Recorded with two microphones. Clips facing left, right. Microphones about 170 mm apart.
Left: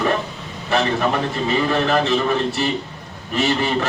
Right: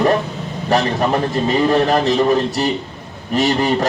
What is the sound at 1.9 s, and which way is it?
A man's voice, 40° right (ahead or behind).